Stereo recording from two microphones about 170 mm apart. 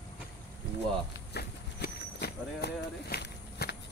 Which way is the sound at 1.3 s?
70° left (ahead or behind).